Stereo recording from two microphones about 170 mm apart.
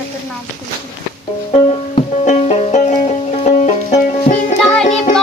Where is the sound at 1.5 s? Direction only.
40° left (ahead or behind).